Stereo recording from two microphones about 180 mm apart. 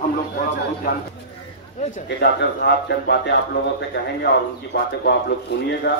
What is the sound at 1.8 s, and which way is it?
Speech, 45° left (ahead or behind).